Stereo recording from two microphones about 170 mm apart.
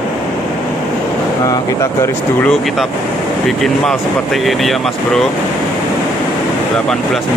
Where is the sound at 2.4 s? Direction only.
Centre (ahead or behind).